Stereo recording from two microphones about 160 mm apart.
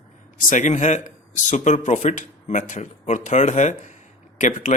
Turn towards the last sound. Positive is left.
turn(degrees=50)  # may be behind; listen again after turning